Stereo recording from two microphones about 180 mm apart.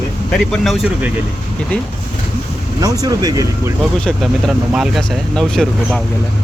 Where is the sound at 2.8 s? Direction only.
20° right (ahead or behind).